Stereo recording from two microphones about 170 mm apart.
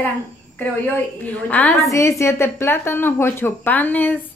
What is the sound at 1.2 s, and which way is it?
Speech, 10° left (ahead or behind).